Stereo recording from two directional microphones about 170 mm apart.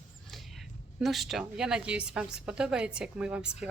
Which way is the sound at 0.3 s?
Centre (ahead or behind).